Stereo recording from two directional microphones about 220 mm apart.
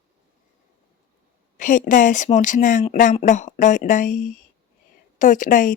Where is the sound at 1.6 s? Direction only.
35° left (ahead or behind).